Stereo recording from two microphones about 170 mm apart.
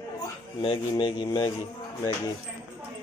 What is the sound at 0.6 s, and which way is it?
Speech, 30° left (ahead or behind).